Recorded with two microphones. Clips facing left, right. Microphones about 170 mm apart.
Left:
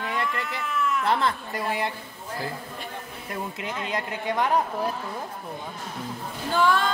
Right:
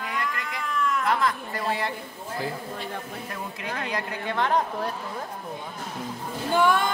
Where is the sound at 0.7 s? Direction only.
5° left (ahead or behind).